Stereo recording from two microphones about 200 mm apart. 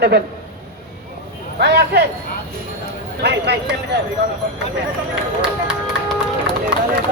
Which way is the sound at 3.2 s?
55° right (ahead or behind).